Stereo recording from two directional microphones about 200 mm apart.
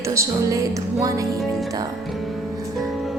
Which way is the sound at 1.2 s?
Centre (ahead or behind).